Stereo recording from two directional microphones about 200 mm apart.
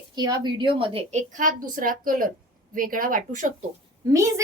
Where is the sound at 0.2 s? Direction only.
20° right (ahead or behind); by 3.5 s 40° right (ahead or behind).